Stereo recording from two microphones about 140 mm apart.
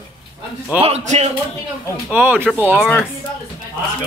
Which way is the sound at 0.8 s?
50° right (ahead or behind).